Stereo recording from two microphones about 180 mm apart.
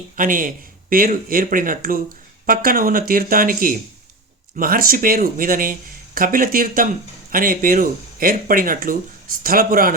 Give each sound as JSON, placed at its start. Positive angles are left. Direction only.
{"t": 0.2, "sound": "speech", "side_deg": -50}